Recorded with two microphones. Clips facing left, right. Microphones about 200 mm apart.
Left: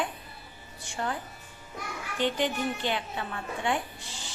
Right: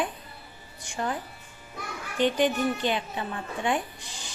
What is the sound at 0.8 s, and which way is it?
Speech, 15° right (ahead or behind).